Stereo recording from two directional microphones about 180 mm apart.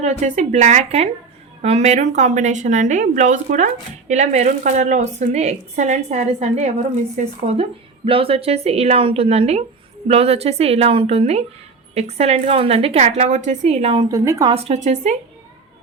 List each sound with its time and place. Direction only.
0.0 s a woman's voice: 40° right (ahead or behind)
14.0 s a woman's voice: 20° right (ahead or behind)
14.5 s a woman's voice: 35° right (ahead or behind)